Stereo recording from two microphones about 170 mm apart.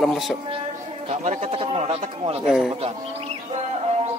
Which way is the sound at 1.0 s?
40° right (ahead or behind).